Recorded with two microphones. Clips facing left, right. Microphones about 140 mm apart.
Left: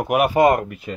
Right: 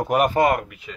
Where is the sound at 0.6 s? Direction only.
40° left (ahead or behind).